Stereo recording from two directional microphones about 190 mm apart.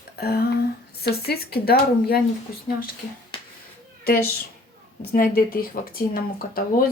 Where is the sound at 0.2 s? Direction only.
55° left (ahead or behind).